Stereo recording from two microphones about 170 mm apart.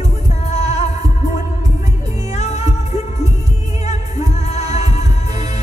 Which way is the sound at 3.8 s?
40° left (ahead or behind).